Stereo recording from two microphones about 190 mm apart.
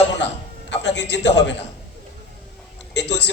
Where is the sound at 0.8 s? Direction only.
70° left (ahead or behind).